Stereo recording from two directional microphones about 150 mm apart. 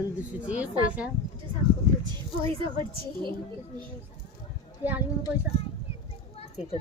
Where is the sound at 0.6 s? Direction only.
10° right (ahead or behind).